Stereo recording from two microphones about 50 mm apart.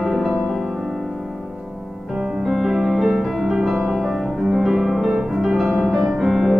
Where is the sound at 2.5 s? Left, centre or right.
Centre.